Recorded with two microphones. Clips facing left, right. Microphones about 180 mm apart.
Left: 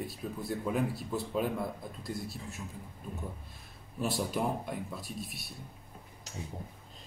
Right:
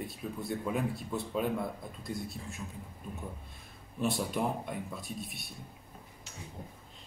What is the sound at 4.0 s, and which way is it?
Speech, centre (ahead or behind).